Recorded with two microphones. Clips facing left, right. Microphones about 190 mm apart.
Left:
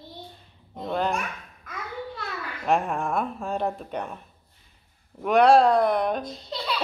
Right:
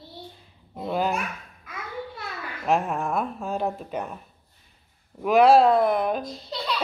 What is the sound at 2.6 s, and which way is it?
Speech, centre (ahead or behind).